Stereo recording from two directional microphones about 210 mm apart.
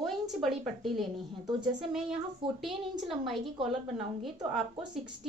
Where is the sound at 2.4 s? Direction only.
25° right (ahead or behind).